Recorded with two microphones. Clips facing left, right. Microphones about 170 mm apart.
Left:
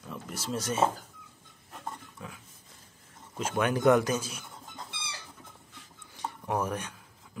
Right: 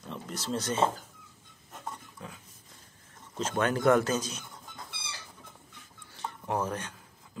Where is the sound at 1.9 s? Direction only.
5° left (ahead or behind).